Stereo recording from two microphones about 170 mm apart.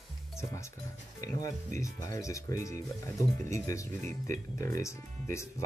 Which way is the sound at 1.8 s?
20° left (ahead or behind).